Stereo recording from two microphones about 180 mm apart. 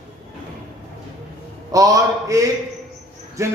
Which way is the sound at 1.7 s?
20° right (ahead or behind).